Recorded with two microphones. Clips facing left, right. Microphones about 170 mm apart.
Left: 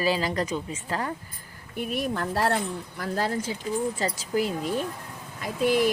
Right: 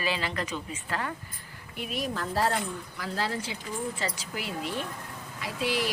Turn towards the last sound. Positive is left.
turn(degrees=50)  # may be behind; listen again after turning